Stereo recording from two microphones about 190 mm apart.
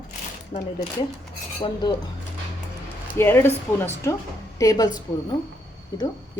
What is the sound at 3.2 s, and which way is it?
A woman's voice, 10° left (ahead or behind).